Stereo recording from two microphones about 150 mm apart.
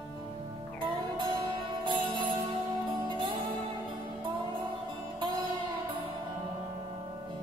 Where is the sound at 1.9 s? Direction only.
35° right (ahead or behind).